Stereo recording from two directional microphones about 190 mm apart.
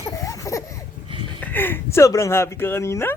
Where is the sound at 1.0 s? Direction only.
30° right (ahead or behind).